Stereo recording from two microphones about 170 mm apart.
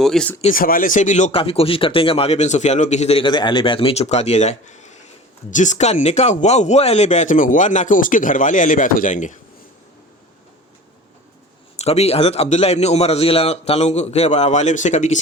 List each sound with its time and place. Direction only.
0.0 s speech: 5° left (ahead or behind)
0.5 s speech: 55° left (ahead or behind)
11.8 s a man's voice: 40° left (ahead or behind)